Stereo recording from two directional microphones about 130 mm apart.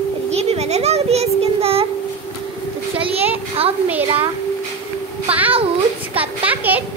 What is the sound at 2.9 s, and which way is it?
Speech, 45° right (ahead or behind).